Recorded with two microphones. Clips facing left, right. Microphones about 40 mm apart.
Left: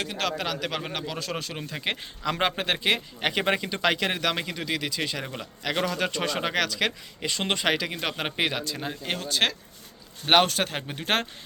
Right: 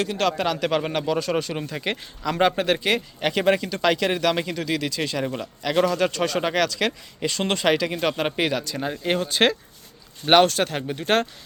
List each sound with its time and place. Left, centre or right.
0.0 s speech: centre
10.2 s speech: centre